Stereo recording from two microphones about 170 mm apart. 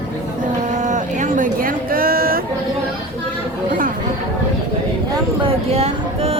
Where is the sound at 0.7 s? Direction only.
45° right (ahead or behind).